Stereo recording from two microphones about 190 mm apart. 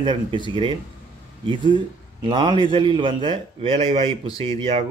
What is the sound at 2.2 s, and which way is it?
Speech, 25° right (ahead or behind).